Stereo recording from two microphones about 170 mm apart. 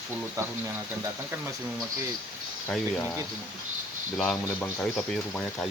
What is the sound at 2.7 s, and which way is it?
Speech, 10° left (ahead or behind).